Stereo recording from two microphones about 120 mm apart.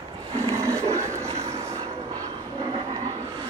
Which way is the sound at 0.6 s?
25° right (ahead or behind).